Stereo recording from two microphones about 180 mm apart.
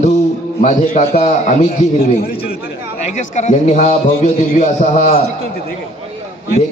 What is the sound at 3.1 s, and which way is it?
A man's voice, 40° left (ahead or behind).